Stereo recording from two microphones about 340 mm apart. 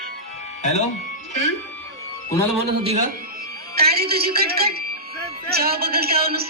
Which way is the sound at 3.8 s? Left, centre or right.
Right.